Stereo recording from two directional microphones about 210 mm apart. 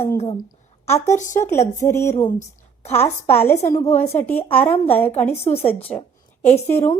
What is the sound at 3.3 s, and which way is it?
A woman's voice, 10° left (ahead or behind).